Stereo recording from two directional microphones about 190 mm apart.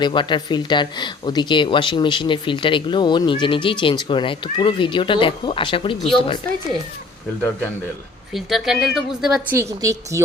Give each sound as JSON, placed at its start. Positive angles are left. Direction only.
{"t": 0.0, "sound": "speech", "side_deg": 25}
{"t": 8.3, "sound": "a woman's voice", "side_deg": 0}
{"t": 9.6, "sound": "speech", "side_deg": -15}